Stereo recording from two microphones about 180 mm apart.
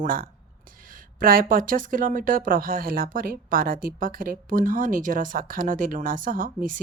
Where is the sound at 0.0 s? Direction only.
50° right (ahead or behind).